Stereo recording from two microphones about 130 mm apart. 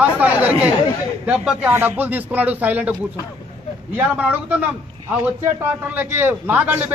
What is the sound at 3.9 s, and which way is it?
Speech, 10° right (ahead or behind).